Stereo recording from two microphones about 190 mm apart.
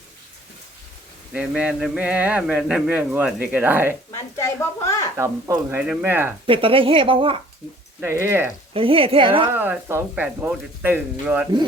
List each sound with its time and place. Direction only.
1.3 s a man's voice: 5° right (ahead or behind)
4.1 s speech: 15° left (ahead or behind)
5.1 s a man's voice: 15° right (ahead or behind)
6.4 s speech: 30° right (ahead or behind)
8.0 s a man's voice: 15° right (ahead or behind)
8.7 s speech: 30° right (ahead or behind)
9.5 s a man's voice: 10° right (ahead or behind)